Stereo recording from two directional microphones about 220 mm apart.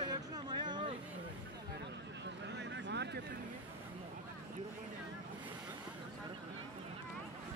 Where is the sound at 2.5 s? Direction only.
50° right (ahead or behind).